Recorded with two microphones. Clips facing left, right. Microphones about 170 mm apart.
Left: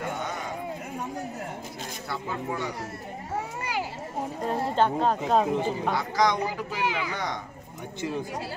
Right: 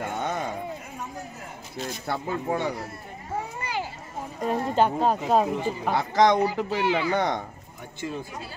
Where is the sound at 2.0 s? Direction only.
60° right (ahead or behind).